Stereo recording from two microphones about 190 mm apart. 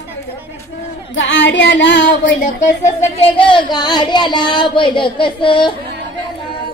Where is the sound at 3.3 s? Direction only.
25° left (ahead or behind).